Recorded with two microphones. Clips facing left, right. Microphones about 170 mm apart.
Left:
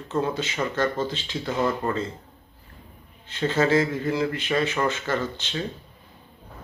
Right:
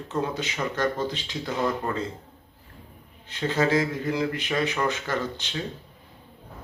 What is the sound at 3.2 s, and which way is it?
A man's voice, 15° right (ahead or behind).